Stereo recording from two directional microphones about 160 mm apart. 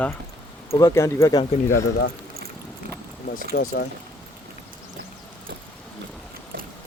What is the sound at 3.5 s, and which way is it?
Speech, 75° left (ahead or behind).